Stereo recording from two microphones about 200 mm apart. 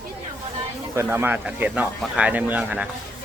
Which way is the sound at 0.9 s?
10° right (ahead or behind).